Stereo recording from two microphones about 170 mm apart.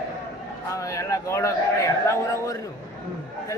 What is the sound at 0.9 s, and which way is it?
A man's voice, 20° left (ahead or behind).